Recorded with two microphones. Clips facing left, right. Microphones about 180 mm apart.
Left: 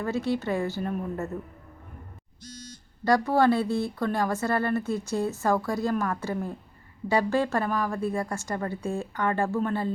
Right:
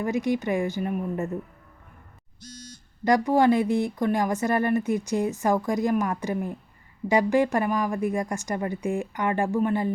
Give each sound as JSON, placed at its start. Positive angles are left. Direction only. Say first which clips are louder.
{"t": 0.0, "sound": "speech", "louder": "right 2 dB", "side_deg": -15}
{"t": 3.0, "sound": "speech", "louder": "right 2 dB", "side_deg": -15}